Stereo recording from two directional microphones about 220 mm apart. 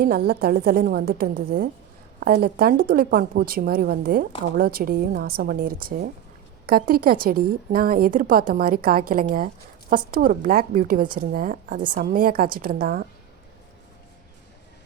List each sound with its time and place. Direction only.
0.3 s a woman's voice: 45° right (ahead or behind)